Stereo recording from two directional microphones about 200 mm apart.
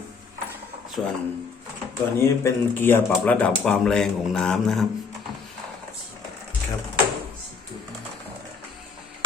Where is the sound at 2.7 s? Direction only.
10° left (ahead or behind).